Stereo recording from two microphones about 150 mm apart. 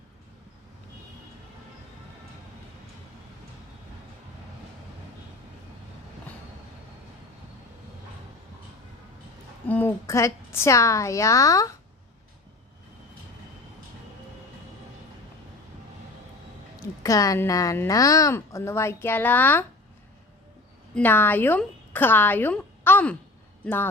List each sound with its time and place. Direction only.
9.6 s a woman's voice: 10° left (ahead or behind)
17.0 s a woman's voice: 25° left (ahead or behind)
20.9 s a woman's voice: 15° left (ahead or behind)